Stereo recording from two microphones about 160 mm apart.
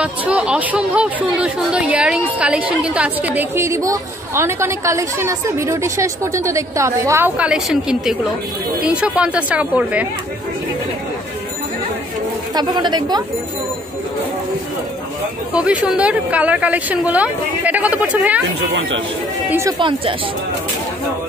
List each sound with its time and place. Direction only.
0.0 s speech: 5° right (ahead or behind)
12.5 s a woman's voice: 25° right (ahead or behind)
15.5 s speech: 5° right (ahead or behind)
19.8 s speech: 30° right (ahead or behind)